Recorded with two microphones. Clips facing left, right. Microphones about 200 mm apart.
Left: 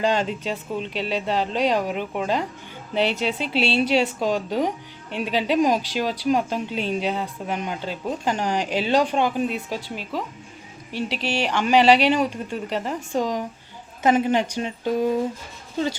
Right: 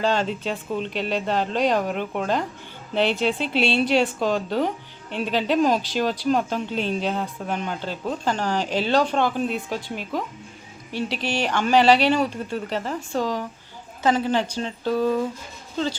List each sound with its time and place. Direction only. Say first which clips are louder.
0.0 s speech: even; 10° left (ahead or behind)
11.3 s speech: left 1 dB; 10° left (ahead or behind)